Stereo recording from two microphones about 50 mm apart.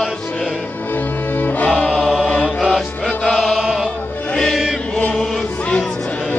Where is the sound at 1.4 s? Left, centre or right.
Left.